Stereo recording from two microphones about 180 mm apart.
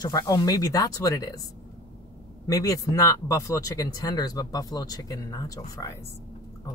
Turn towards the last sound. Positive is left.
turn(degrees=20)  # may be behind; listen again after turning